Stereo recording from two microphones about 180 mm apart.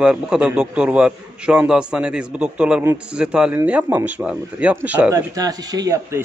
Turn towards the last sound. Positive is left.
turn(degrees=-20)  # may be behind; listen again after turning